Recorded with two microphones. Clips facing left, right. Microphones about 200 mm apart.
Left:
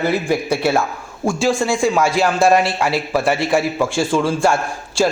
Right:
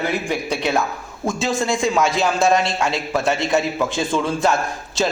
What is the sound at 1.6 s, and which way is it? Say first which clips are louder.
A man's voice: left 2 dB; 5° left (ahead or behind).